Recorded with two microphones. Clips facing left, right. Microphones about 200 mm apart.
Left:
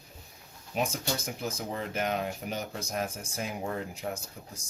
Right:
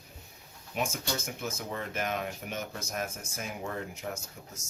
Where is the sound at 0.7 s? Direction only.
35° left (ahead or behind).